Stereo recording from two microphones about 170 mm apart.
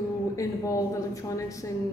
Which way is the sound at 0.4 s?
20° left (ahead or behind).